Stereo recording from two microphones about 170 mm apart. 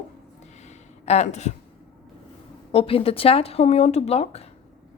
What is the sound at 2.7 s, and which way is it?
A woman's voice, 35° left (ahead or behind).